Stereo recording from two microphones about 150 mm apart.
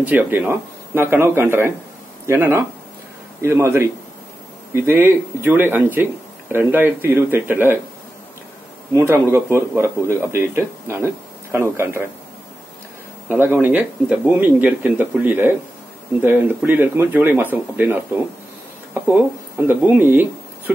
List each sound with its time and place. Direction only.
0.0 s speech: 10° right (ahead or behind)
8.9 s speech: 15° right (ahead or behind)
13.3 s speech: 15° right (ahead or behind)
19.7 s speech: 10° right (ahead or behind)